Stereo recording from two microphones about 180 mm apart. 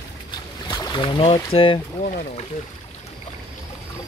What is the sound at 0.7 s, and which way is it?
Speech, 25° left (ahead or behind).